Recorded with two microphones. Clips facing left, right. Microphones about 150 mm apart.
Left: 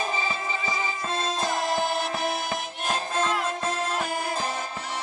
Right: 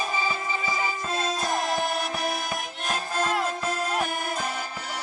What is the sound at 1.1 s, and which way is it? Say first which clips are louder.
Music: even; 25° left (ahead or behind).